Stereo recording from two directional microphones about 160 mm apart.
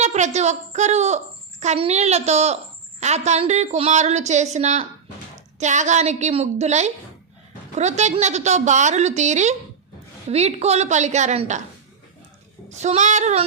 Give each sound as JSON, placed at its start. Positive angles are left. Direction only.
{"t": 0.0, "sound": "a child's voice", "side_deg": -45}
{"t": 12.7, "sound": "a woman's voice", "side_deg": -45}